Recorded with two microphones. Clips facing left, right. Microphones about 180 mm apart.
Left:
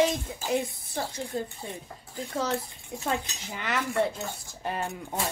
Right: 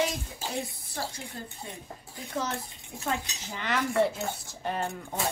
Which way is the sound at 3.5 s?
5° left (ahead or behind).